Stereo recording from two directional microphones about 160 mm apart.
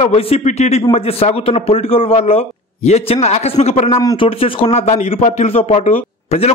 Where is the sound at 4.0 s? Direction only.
20° left (ahead or behind).